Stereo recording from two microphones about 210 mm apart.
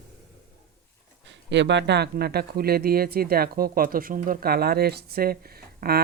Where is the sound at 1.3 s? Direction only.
60° right (ahead or behind).